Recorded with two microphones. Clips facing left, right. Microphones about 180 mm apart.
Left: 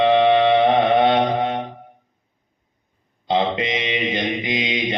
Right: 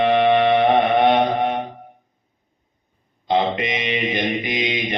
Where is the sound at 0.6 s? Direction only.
25° left (ahead or behind).